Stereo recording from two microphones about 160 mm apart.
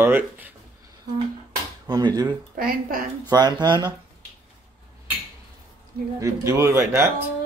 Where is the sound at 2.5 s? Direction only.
60° right (ahead or behind).